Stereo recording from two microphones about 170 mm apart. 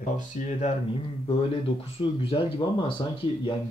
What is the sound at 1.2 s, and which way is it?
Speech, 30° left (ahead or behind).